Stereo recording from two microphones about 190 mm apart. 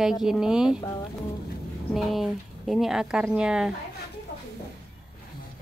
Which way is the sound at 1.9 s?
Centre (ahead or behind).